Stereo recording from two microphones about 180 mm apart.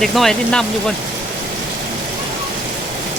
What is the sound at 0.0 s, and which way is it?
Speech, centre (ahead or behind).